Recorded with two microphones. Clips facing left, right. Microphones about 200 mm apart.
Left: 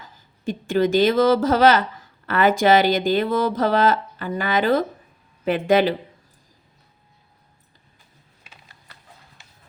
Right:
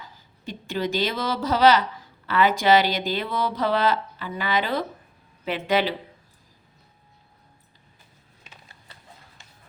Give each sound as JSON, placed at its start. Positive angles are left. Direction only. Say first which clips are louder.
{"t": 0.0, "sound": "speech", "louder": "left 9 dB", "side_deg": 50}